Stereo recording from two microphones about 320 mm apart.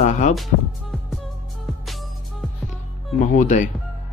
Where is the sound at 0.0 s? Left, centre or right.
Left.